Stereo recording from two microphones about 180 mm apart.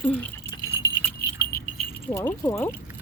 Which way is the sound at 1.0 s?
15° left (ahead or behind).